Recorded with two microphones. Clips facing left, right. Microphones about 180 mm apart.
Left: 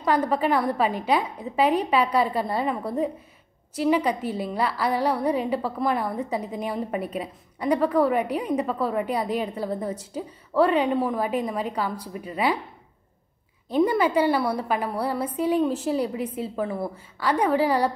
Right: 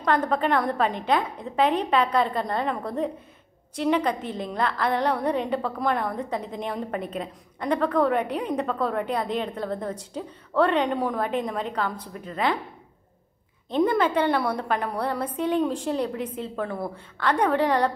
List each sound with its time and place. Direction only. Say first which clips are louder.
0.0 s a woman's voice: left 1 dB; 10° left (ahead or behind)
13.7 s a woman's voice: left 1 dB; 5° left (ahead or behind)